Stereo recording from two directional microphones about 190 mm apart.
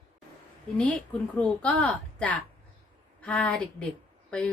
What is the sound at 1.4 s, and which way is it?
A woman's voice, 5° left (ahead or behind).